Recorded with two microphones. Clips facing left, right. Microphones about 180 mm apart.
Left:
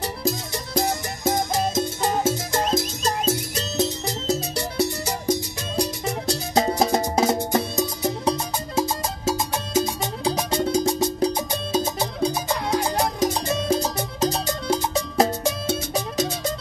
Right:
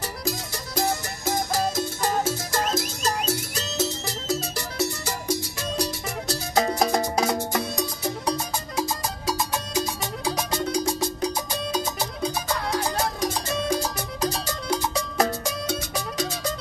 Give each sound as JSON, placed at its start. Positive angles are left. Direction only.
{"t": 0.0, "sound": "music", "side_deg": 20}